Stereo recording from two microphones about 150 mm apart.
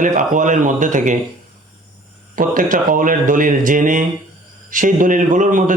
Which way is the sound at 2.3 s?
65° right (ahead or behind).